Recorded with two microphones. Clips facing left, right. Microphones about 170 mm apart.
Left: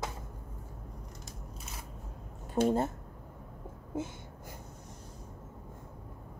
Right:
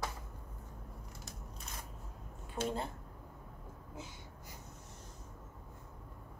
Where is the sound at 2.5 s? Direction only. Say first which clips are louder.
Left 10 dB; 45° left (ahead or behind).